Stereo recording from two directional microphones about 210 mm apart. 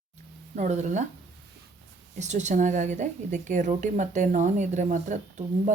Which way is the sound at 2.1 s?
35° right (ahead or behind).